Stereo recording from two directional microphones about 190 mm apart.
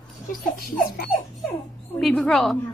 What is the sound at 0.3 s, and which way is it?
Speech, 50° left (ahead or behind).